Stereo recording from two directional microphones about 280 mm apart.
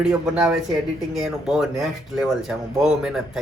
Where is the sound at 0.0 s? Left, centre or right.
Centre.